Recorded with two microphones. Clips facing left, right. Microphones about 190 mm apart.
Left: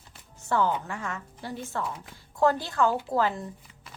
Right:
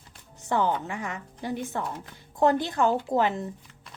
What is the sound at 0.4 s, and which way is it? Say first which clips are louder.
A woman's voice: even; 15° right (ahead or behind).